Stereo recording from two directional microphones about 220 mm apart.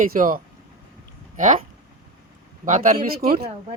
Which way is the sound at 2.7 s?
35° right (ahead or behind).